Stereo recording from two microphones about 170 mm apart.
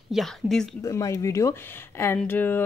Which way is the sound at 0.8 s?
20° left (ahead or behind).